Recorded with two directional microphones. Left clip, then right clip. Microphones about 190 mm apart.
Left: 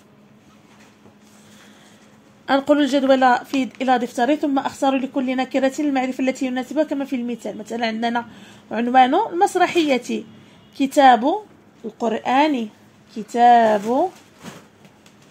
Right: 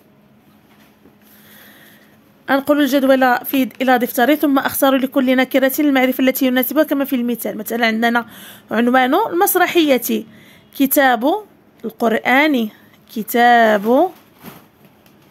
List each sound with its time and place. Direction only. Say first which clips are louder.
2.4 s speech: right 2 dB; 30° right (ahead or behind)